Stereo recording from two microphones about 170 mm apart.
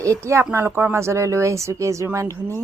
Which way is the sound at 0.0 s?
20° right (ahead or behind).